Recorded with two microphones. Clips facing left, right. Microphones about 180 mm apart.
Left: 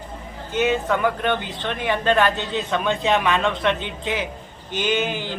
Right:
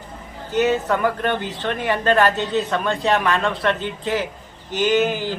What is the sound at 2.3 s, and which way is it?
Speech, 45° right (ahead or behind).